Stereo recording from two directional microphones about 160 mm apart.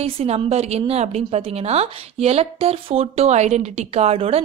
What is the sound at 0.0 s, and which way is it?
A woman's voice, 40° right (ahead or behind).